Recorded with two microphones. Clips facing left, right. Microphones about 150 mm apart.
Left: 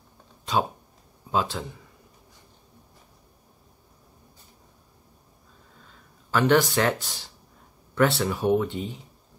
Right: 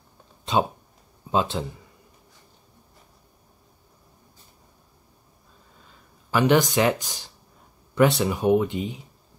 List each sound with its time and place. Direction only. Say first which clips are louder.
0.5 s speech: right 2 dB; 25° right (ahead or behind)
6.3 s speech: right 1 dB; 15° right (ahead or behind)